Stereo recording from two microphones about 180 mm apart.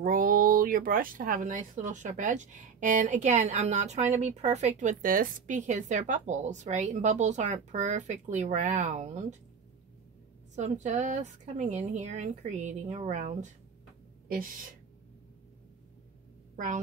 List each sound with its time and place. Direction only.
0.0 s speech: 50° right (ahead or behind)
10.5 s a woman's voice: 40° right (ahead or behind)
16.5 s a woman's voice: 45° right (ahead or behind)